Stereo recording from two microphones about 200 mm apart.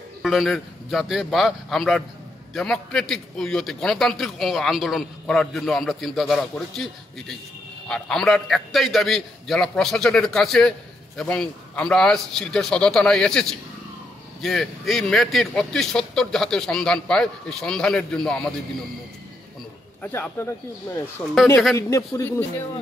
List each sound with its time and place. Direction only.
0.2 s a man's voice: centre (ahead or behind)
20.0 s speech: 10° left (ahead or behind)